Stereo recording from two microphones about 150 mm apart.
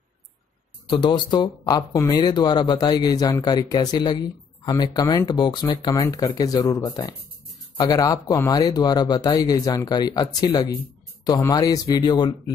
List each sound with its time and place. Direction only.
0.8 s speech: 30° left (ahead or behind)